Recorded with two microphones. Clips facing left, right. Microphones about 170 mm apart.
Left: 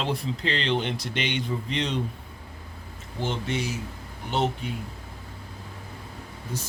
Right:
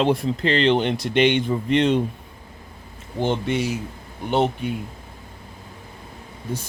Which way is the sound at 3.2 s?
60° right (ahead or behind).